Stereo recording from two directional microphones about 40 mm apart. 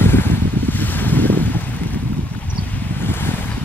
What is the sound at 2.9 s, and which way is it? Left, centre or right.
Waves, left.